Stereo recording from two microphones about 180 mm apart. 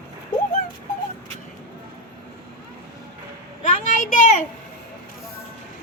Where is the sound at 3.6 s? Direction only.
45° left (ahead or behind).